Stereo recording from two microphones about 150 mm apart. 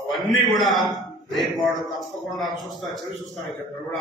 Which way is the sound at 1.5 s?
25° left (ahead or behind).